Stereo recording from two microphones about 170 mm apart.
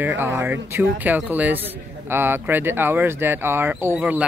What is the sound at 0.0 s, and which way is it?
A man's voice, 15° right (ahead or behind).